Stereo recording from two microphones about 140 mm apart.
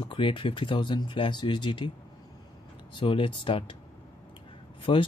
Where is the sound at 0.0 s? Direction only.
35° left (ahead or behind).